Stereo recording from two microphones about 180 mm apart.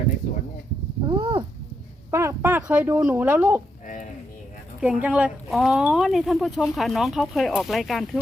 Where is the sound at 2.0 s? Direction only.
15° right (ahead or behind).